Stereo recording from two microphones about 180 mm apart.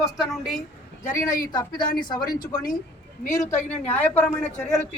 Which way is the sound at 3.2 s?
45° left (ahead or behind).